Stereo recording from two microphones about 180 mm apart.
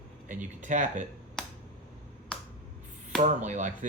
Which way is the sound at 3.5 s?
45° right (ahead or behind).